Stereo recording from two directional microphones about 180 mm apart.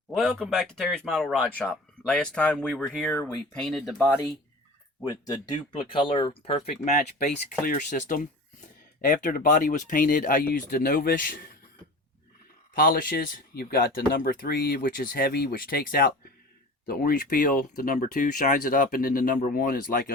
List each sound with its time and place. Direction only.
0.1 s speech: centre (ahead or behind)
3.2 s speech: 20° left (ahead or behind)
3.5 s speech: centre (ahead or behind)
4.9 s speech: 20° left (ahead or behind)
7.6 s speech: 45° left (ahead or behind)
12.7 s speech: 50° left (ahead or behind)